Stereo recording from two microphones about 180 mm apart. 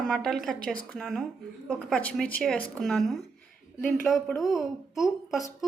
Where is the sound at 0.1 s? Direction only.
5° left (ahead or behind).